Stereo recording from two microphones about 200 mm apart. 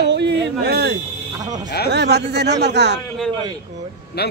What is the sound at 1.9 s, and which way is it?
A man's voice, 55° right (ahead or behind).